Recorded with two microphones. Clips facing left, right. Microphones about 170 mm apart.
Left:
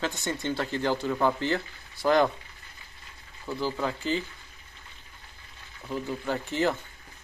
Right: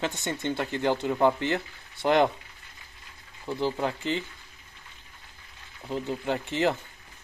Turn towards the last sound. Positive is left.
turn(degrees=-25)  # may be behind; listen again after turning